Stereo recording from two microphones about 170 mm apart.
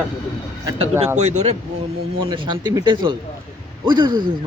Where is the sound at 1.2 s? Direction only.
40° right (ahead or behind).